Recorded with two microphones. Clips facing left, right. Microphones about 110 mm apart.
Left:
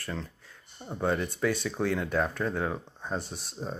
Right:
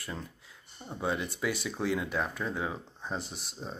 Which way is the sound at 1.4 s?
5° right (ahead or behind).